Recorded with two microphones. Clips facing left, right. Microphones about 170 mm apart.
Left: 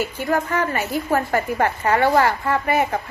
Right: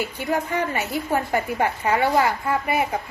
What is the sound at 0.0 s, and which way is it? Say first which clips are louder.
A woman's voice: left 3 dB; 15° right (ahead or behind).